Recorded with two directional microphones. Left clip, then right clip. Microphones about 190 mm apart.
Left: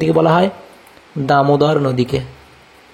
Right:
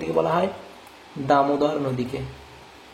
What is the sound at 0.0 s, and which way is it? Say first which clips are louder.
A man's voice: left 9 dB; 40° left (ahead or behind).